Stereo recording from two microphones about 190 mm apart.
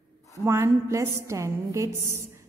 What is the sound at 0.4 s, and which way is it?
A woman's voice, 15° right (ahead or behind).